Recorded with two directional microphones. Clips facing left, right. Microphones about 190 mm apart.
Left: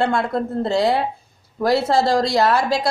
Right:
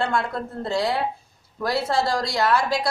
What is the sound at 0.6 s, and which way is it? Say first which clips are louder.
A woman's voice: left 3 dB; 25° left (ahead or behind).